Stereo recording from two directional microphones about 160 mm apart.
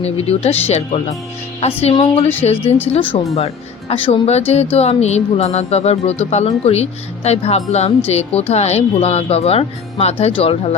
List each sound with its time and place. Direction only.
0.0 s speech: 40° left (ahead or behind)